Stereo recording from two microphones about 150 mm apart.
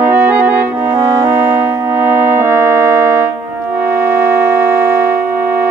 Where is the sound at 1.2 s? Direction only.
15° right (ahead or behind).